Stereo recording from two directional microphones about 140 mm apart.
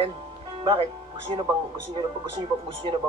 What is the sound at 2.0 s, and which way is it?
Speech, 30° right (ahead or behind).